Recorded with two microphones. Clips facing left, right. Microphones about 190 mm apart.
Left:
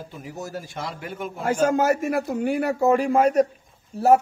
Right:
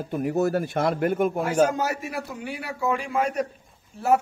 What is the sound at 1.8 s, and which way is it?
A man's voice, 50° left (ahead or behind).